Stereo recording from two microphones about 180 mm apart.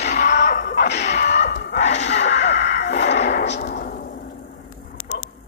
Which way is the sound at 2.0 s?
80° left.